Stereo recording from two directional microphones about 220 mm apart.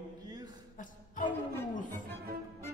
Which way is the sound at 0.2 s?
20° right (ahead or behind).